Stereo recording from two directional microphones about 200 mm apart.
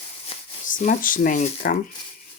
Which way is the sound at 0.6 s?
40° left (ahead or behind).